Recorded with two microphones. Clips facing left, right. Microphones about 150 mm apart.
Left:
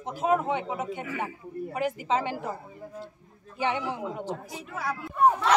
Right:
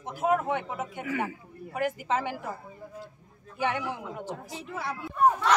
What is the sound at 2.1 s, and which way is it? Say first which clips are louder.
Speech: left 4 dB; 20° left (ahead or behind).